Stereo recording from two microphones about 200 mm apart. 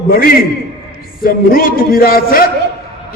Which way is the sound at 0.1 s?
45° left (ahead or behind).